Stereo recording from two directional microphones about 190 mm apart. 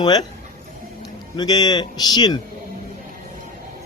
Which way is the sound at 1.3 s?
20° left (ahead or behind).